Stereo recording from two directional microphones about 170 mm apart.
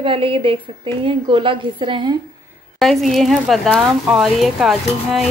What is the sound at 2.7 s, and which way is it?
Speech, centre (ahead or behind).